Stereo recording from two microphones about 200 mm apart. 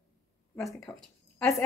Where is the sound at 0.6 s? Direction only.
Centre (ahead or behind).